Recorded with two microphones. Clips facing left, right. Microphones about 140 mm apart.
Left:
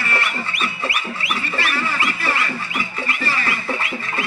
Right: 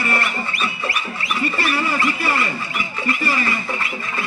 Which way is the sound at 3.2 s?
15° right (ahead or behind).